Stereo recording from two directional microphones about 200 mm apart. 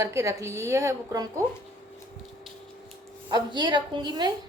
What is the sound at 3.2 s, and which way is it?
A woman's voice, 20° right (ahead or behind).